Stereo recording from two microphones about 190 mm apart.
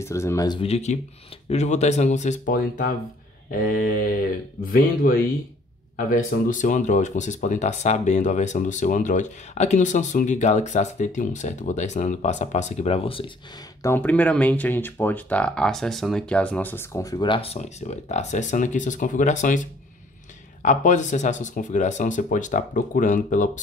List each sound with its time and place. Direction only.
0.0 s speech: 15° left (ahead or behind)
0.6 s speech: 35° left (ahead or behind)
4.6 s speech: 50° left (ahead or behind); by 13.3 s 30° left (ahead or behind)
13.8 s speech: 10° left (ahead or behind); by 23.6 s 40° left (ahead or behind)